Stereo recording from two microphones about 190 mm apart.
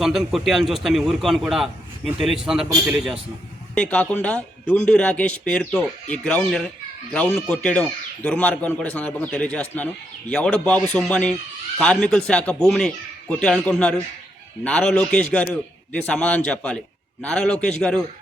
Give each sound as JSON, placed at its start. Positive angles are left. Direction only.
{"t": 0.0, "sound": "a man's voice", "side_deg": 0}